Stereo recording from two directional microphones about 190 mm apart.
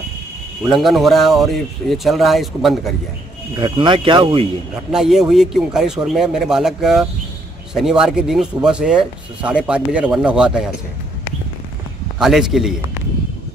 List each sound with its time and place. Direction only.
0.7 s speech: centre (ahead or behind)
3.5 s speech: 25° right (ahead or behind)
4.9 s speech: 5° right (ahead or behind)
12.2 s speech: centre (ahead or behind)